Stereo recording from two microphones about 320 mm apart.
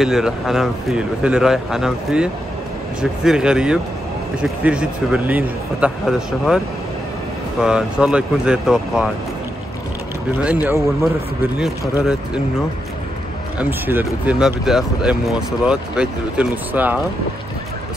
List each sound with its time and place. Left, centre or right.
0.0 s speech: centre
7.6 s speech: centre
10.4 s speech: centre
13.6 s speech: centre